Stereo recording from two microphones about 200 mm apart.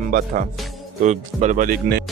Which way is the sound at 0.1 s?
45° right (ahead or behind).